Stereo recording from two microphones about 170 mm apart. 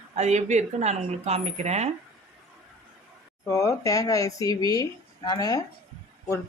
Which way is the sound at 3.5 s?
20° left (ahead or behind).